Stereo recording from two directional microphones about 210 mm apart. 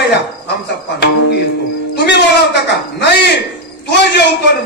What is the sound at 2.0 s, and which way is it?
A man's voice, 55° left (ahead or behind).